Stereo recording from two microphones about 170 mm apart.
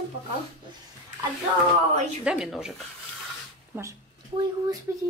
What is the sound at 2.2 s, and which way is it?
Speech, 5° right (ahead or behind).